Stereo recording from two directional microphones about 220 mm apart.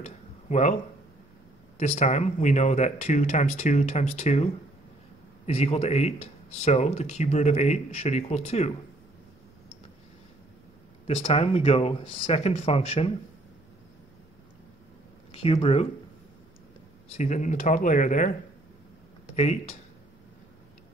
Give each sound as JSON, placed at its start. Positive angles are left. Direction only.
{"t": 0.0, "sound": "a sound", "side_deg": 30}
{"t": 2.0, "sound": "speech", "side_deg": 30}
{"t": 5.5, "sound": "speech", "side_deg": 30}
{"t": 11.1, "sound": "speech", "side_deg": 25}
{"t": 15.3, "sound": "speech", "side_deg": 25}
{"t": 17.2, "sound": "speech", "side_deg": 35}
{"t": 19.3, "sound": "speech", "side_deg": 30}